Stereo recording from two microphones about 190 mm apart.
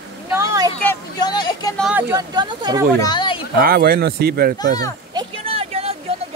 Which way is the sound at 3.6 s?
55° right (ahead or behind).